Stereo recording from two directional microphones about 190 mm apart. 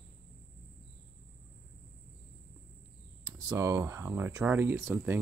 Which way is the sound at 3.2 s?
20° right (ahead or behind).